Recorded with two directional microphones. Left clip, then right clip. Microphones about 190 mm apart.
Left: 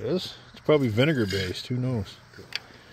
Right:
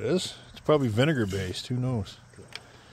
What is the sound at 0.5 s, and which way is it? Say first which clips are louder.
Speech: left 2 dB; 10° left (ahead or behind).